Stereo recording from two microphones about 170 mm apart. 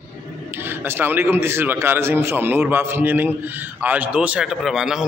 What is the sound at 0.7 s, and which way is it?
A man's voice, 10° right (ahead or behind).